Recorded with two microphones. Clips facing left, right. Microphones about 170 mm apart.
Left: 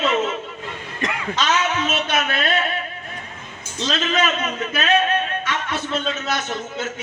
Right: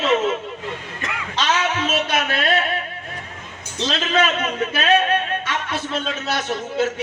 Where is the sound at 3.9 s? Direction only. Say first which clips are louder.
Right 1 dB; 30° right (ahead or behind).